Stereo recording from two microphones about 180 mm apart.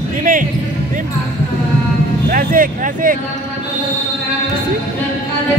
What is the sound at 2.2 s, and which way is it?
Music, 50° right (ahead or behind).